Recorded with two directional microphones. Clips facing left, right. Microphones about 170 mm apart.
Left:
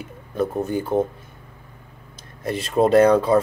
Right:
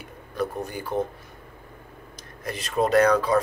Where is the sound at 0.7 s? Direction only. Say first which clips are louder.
Left 7 dB; 25° left (ahead or behind).